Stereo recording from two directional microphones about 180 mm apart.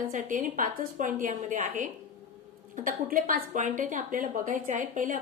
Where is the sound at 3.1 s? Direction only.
50° right (ahead or behind).